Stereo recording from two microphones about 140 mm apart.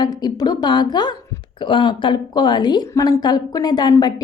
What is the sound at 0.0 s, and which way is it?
A woman's voice, 30° left (ahead or behind).